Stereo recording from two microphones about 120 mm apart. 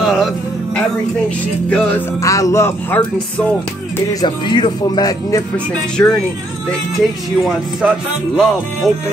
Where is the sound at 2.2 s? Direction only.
25° left (ahead or behind).